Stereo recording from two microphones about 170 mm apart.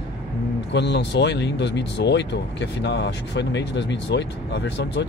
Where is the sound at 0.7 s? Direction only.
90° left.